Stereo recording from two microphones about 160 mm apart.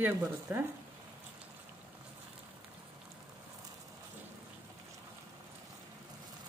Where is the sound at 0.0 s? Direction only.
10° right (ahead or behind).